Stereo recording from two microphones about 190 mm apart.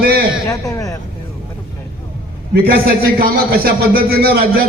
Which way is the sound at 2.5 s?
50° right (ahead or behind).